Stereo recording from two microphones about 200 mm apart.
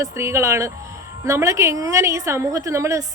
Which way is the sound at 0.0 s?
15° right (ahead or behind).